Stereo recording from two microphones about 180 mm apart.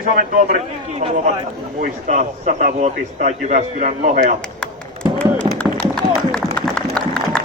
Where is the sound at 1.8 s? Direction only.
45° right (ahead or behind).